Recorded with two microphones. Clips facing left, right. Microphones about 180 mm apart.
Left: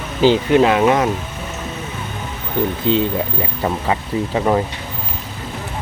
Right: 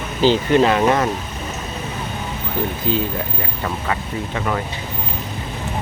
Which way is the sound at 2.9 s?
25° left (ahead or behind).